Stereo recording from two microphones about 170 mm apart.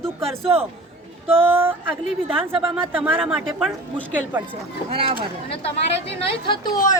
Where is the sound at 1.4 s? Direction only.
10° right (ahead or behind).